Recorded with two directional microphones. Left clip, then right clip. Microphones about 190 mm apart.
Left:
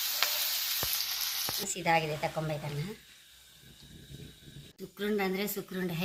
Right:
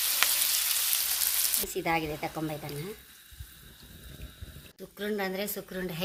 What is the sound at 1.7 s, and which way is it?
Speech, 55° right (ahead or behind).